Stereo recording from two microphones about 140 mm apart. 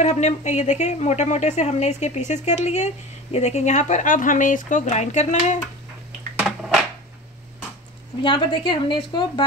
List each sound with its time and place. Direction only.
0.0 s a woman's voice: 55° left (ahead or behind)
6.4 s a sound: 5° right (ahead or behind)
8.2 s speech: 35° left (ahead or behind)